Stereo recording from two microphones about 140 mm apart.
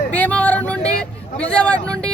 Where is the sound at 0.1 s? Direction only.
10° left (ahead or behind).